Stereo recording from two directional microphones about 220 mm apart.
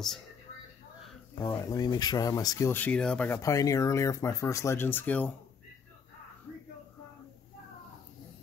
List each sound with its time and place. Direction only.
1.5 s speech: 15° left (ahead or behind)
3.3 s speech: 15° left (ahead or behind)